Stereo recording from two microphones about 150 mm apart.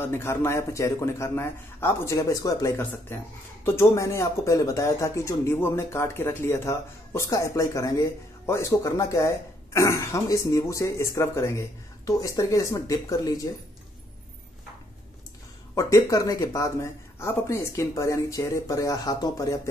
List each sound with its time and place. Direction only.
0.0 s a man's voice: 15° left (ahead or behind)
15.7 s speech: 20° left (ahead or behind)